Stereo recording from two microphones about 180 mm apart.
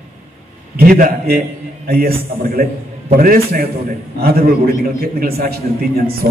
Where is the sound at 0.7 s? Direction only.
50° right (ahead or behind).